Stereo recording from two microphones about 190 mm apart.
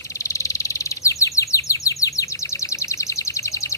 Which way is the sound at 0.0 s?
15° left (ahead or behind).